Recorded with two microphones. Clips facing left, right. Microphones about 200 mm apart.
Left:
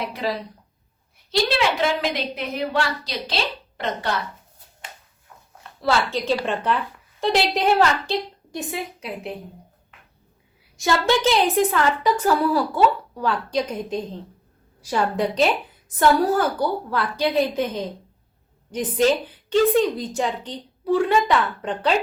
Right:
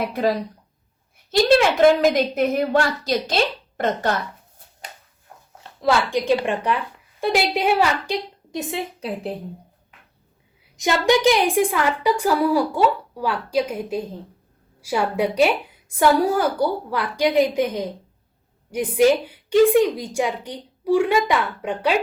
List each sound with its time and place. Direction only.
0.0 s a woman's voice: 50° right (ahead or behind)
5.8 s a woman's voice: 15° right (ahead or behind)
10.8 s a woman's voice: 15° right (ahead or behind)